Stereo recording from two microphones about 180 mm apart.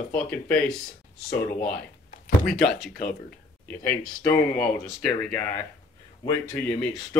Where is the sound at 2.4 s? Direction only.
5° left (ahead or behind).